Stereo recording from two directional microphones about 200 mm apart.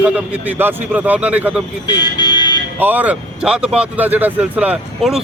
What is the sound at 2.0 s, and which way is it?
Music, 20° left (ahead or behind).